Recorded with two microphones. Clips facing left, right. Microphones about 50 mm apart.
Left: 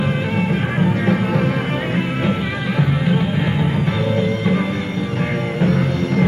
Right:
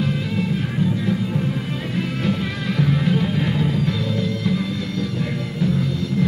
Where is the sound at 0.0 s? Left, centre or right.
Left.